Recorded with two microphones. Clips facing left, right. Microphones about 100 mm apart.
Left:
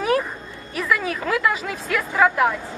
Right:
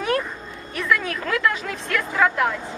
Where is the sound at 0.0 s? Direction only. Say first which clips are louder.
Left 3 dB; centre (ahead or behind).